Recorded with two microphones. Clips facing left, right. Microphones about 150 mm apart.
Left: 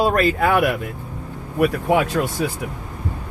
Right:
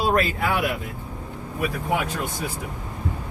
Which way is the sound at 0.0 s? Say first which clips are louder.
Left 5 dB; 50° left (ahead or behind).